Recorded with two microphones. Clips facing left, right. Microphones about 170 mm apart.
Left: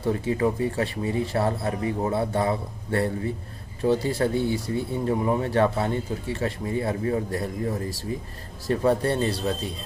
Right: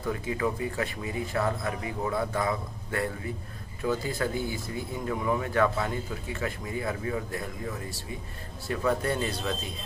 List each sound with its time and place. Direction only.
0.0 s speech: 30° left (ahead or behind)